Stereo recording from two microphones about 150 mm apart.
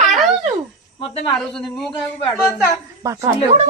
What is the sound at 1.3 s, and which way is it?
Speech, centre (ahead or behind).